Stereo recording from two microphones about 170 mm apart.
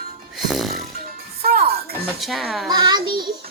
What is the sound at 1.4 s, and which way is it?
Music, 60° right (ahead or behind).